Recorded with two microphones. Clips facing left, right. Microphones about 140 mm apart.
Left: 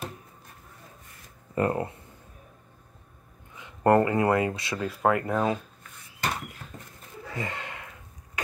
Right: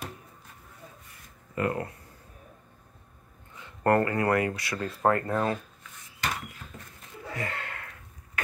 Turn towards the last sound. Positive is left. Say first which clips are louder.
# even
turn(degrees=20)  # may be behind; listen again after turning